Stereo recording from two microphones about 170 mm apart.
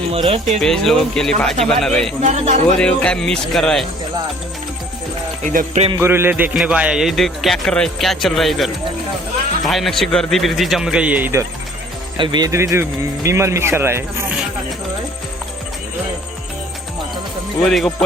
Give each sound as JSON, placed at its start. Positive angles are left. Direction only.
{"t": 0.1, "sound": "speech", "side_deg": -35}
{"t": 0.6, "sound": "a man's voice", "side_deg": 0}
{"t": 2.2, "sound": "speech", "side_deg": -40}
{"t": 2.7, "sound": "a man's voice", "side_deg": 5}
{"t": 5.5, "sound": "music", "side_deg": -45}
{"t": 6.0, "sound": "a man's voice", "side_deg": -15}
{"t": 12.1, "sound": "speech", "side_deg": -30}
{"t": 17.6, "sound": "a man's voice", "side_deg": 0}